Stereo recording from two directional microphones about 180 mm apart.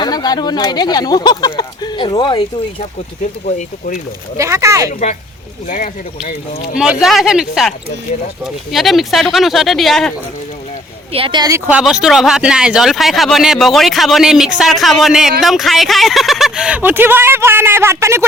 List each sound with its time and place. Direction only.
0.0 s speech: 20° left (ahead or behind)
3.4 s speech: 45° left (ahead or behind)
4.4 s speech: 15° right (ahead or behind)
4.9 s speech: 45° left (ahead or behind)
6.7 s speech: centre (ahead or behind)
11.1 s speech: 30° right (ahead or behind)
11.7 s speech: 5° right (ahead or behind)